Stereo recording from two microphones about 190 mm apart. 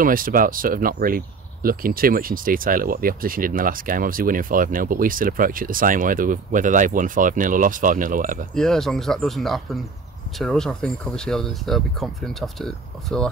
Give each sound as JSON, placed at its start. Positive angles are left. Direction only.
{"t": 0.0, "sound": "speech", "side_deg": -45}
{"t": 8.5, "sound": "speech", "side_deg": 5}